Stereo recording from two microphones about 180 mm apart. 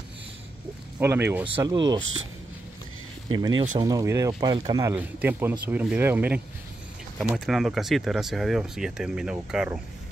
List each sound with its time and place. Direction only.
0.9 s speech: 10° right (ahead or behind)
1.6 s speech: 25° right (ahead or behind)
3.3 s speech: 25° right (ahead or behind)
4.9 s speech: 10° right (ahead or behind)